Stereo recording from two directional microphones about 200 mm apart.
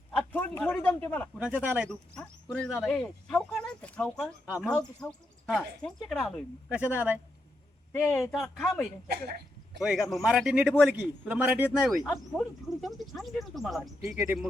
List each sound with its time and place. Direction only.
0.3 s a sound: 10° left (ahead or behind)
1.4 s speech: 5° right (ahead or behind)
1.9 s speech: 5° left (ahead or behind)
5.8 s a man's voice: centre (ahead or behind)
9.0 s speech: 55° right (ahead or behind)
9.7 s a man's voice: centre (ahead or behind)